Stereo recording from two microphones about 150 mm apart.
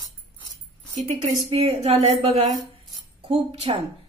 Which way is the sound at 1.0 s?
45° right (ahead or behind).